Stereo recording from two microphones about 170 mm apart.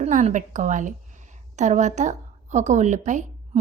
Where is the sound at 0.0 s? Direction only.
45° right (ahead or behind).